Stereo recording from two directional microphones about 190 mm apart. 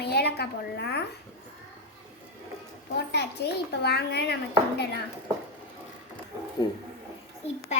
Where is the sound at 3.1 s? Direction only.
60° left (ahead or behind).